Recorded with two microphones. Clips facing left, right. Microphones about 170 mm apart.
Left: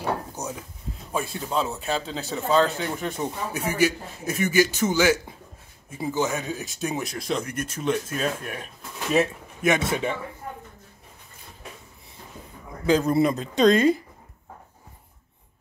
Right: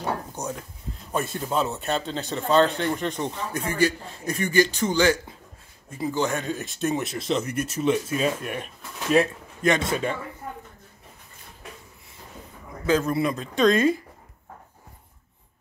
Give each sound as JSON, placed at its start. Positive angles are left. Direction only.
{"t": 0.4, "sound": "speech", "side_deg": -10}
{"t": 1.1, "sound": "speech", "side_deg": 0}
{"t": 9.1, "sound": "a man's voice", "side_deg": 5}
{"t": 12.9, "sound": "speech", "side_deg": 35}